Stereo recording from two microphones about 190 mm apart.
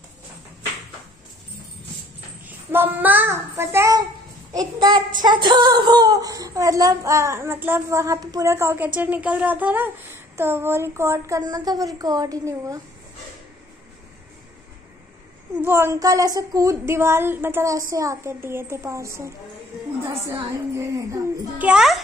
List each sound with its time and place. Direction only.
2.4 s child singing: 10° right (ahead or behind)
4.5 s a child's voice: 20° right (ahead or behind)
15.5 s speech: 10° right (ahead or behind)